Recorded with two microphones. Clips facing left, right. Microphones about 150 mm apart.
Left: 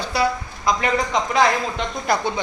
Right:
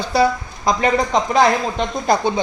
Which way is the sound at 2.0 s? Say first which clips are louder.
Right 4 dB; 25° right (ahead or behind).